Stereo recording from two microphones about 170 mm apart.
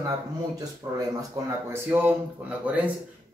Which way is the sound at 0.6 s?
20° right (ahead or behind).